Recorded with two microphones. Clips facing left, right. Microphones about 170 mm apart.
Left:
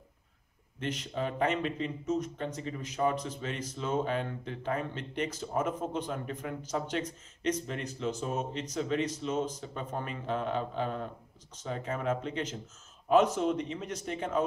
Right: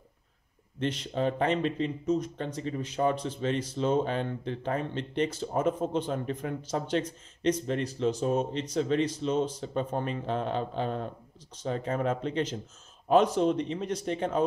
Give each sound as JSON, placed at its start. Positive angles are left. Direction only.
{"t": 0.7, "sound": "speech", "side_deg": -30}